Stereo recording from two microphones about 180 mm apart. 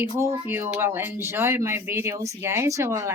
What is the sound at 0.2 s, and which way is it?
Speech, 15° right (ahead or behind).